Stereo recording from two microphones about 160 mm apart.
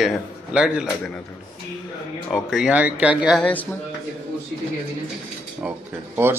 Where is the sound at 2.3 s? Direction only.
5° right (ahead or behind).